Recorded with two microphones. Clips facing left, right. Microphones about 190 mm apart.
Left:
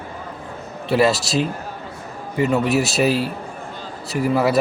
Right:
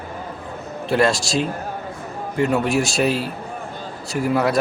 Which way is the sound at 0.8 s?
5° left (ahead or behind).